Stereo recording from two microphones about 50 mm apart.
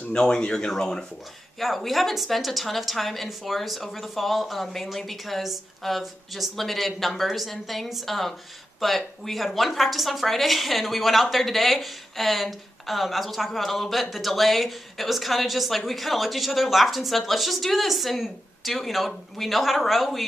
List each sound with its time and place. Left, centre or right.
0.1 s speech: centre
1.6 s a woman's voice: centre